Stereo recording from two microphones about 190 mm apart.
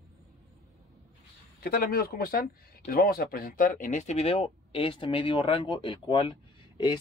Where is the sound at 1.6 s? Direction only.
50° left (ahead or behind).